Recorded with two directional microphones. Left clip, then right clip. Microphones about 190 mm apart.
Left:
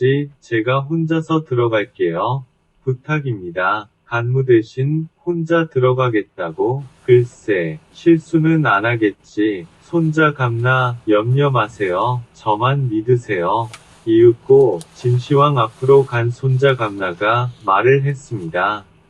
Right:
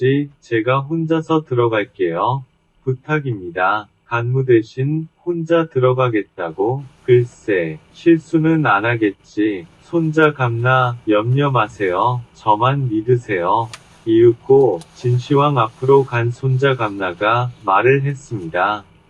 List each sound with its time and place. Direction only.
0.0 s speech: 15° right (ahead or behind)